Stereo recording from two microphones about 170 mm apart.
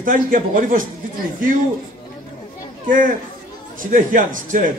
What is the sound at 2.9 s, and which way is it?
A man's voice, 50° right (ahead or behind).